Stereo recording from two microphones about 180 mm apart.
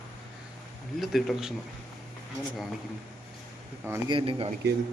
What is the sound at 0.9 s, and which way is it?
Speech, centre (ahead or behind).